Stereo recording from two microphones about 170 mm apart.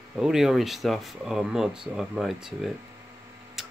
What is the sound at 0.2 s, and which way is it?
Speech, 5° right (ahead or behind).